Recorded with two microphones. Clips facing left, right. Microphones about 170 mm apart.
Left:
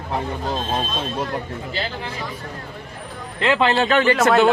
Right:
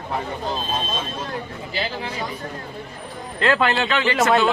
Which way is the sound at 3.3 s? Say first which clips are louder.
Left 2 dB; 20° left (ahead or behind).